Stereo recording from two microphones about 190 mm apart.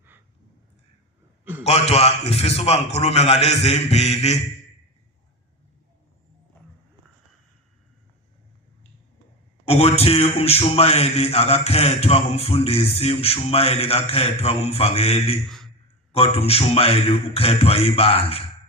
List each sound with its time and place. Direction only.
1.6 s a man's voice: 35° left (ahead or behind)
9.6 s a man's voice: 30° left (ahead or behind)
15.4 s a sound: centre (ahead or behind)
16.1 s a man's voice: 30° left (ahead or behind)